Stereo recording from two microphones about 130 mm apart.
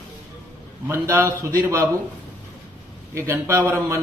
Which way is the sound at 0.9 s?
20° right (ahead or behind).